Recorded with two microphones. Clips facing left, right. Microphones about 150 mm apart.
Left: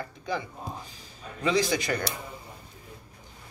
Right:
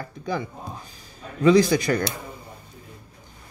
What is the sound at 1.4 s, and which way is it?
Speech, 45° right (ahead or behind).